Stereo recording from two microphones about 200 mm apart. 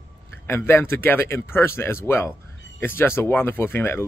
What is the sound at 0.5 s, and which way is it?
Speech, 10° left (ahead or behind).